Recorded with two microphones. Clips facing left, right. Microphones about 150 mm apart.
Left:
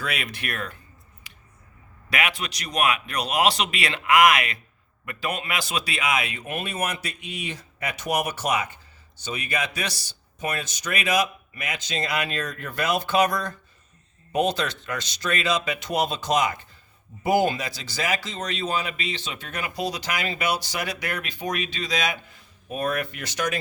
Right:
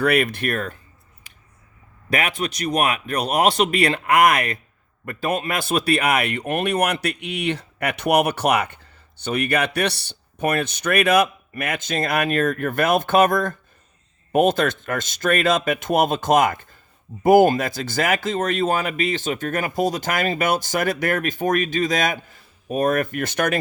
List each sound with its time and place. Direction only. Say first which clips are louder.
0.0 s speech: right 12 dB; 55° right (ahead or behind)
2.0 s speech: right 4 dB; 45° right (ahead or behind)